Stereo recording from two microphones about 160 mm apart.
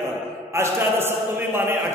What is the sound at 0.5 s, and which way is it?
A man's voice, 15° right (ahead or behind).